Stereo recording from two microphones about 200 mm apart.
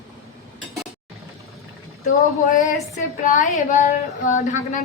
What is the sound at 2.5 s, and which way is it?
A woman's voice, 40° left (ahead or behind).